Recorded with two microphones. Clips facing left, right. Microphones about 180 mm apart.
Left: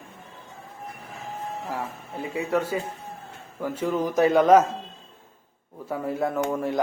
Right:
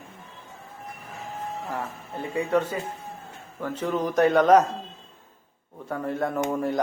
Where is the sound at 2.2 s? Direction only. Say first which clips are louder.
Right 1 dB; 10° left (ahead or behind).